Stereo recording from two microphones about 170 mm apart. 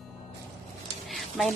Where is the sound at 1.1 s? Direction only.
Centre (ahead or behind).